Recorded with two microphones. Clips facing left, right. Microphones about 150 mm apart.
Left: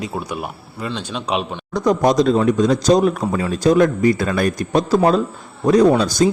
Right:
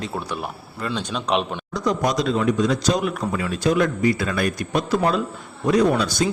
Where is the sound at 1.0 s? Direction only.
5° left (ahead or behind).